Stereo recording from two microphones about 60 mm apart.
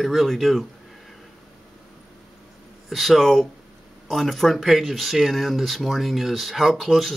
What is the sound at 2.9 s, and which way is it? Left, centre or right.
Speech, centre.